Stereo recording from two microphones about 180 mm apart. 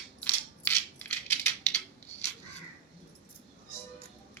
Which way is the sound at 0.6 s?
10° left (ahead or behind).